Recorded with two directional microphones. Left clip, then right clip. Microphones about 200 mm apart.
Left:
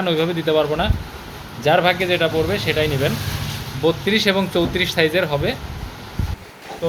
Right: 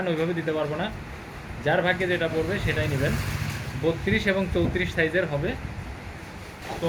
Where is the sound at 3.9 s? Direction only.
50° left (ahead or behind).